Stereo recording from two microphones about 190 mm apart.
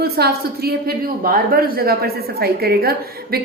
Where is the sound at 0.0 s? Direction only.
55° right (ahead or behind).